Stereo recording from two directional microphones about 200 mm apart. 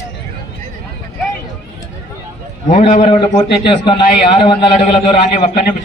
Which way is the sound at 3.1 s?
25° left (ahead or behind).